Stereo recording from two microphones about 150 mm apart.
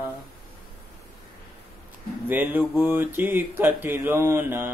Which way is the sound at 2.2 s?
10° right (ahead or behind).